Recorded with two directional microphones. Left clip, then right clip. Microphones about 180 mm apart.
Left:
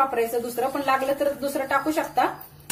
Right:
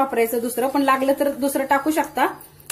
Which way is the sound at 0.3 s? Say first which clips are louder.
Right 3 dB; 40° right (ahead or behind).